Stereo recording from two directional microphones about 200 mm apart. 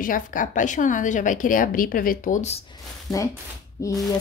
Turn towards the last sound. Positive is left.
turn(degrees=15)  # may be behind; listen again after turning